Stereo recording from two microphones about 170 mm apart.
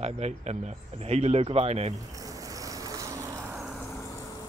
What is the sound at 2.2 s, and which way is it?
Vehicle, 20° right (ahead or behind).